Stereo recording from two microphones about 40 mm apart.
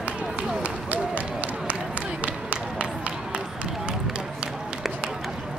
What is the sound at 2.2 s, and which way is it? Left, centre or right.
Run, right.